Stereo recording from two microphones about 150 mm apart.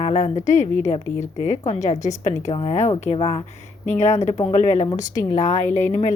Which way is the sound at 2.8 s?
50° left (ahead or behind).